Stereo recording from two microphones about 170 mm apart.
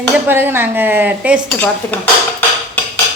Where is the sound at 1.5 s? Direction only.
10° left (ahead or behind).